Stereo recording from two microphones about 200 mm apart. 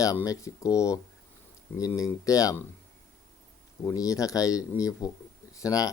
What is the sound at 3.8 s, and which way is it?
Speech, 15° left (ahead or behind).